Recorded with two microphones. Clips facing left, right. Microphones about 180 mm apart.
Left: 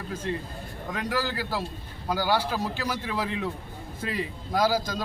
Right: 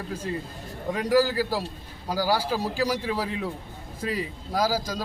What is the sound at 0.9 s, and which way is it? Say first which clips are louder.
Speech: right 8 dB; 10° right (ahead or behind).